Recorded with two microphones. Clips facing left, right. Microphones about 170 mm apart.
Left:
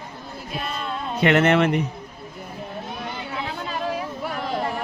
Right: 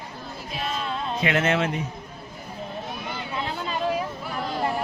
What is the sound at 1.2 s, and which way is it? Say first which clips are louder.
Speech: left 6 dB; 60° left (ahead or behind).